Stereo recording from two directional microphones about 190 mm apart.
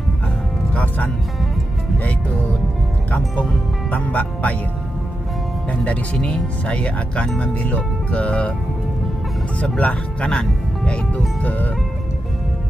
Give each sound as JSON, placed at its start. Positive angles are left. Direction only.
{"t": 0.7, "sound": "music", "side_deg": 10}
{"t": 3.1, "sound": "speech", "side_deg": 5}
{"t": 5.7, "sound": "speech", "side_deg": 5}
{"t": 9.6, "sound": "speech", "side_deg": 5}